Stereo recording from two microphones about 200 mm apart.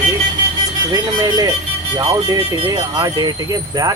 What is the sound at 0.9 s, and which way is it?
Speech, 20° right (ahead or behind).